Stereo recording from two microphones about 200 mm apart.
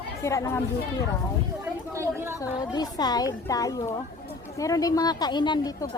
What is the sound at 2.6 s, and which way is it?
A woman's voice, 20° left (ahead or behind).